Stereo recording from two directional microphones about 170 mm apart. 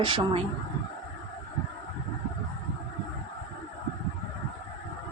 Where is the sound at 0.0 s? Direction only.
30° right (ahead or behind).